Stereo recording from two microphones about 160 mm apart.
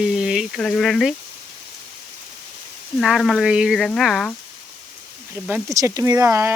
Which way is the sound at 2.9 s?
Centre (ahead or behind).